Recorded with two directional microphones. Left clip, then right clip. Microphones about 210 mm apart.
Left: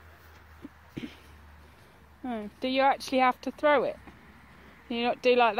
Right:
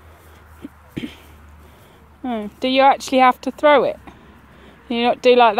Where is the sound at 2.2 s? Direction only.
10° right (ahead or behind).